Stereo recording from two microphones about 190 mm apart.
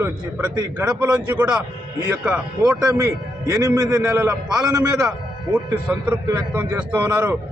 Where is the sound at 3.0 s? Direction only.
15° right (ahead or behind).